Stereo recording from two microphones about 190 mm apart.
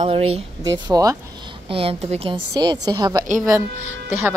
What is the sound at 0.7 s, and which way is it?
Speech, 20° right (ahead or behind).